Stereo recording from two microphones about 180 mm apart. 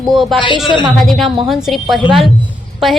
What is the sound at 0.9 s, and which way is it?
A woman's voice, centre (ahead or behind).